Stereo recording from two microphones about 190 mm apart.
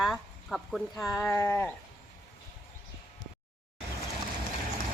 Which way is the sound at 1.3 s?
10° left (ahead or behind).